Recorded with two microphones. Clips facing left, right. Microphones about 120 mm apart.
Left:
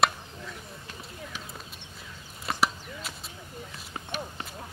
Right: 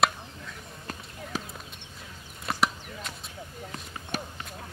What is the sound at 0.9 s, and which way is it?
Basketball bounce, 40° right (ahead or behind).